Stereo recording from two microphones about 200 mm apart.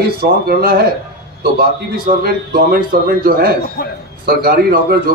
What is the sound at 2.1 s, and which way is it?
A man's voice, 45° right (ahead or behind).